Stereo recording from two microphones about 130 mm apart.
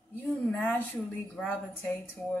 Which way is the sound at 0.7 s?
Centre (ahead or behind).